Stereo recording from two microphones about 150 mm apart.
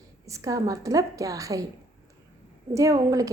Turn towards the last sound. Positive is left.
turn(degrees=-25)  # may be behind; listen again after turning